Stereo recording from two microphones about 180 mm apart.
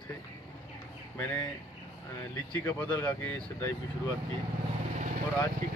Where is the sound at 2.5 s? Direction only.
10° left (ahead or behind).